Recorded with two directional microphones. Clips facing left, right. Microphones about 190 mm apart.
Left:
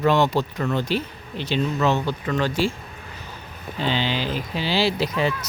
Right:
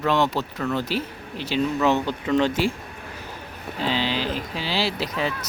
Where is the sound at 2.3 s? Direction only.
20° right (ahead or behind).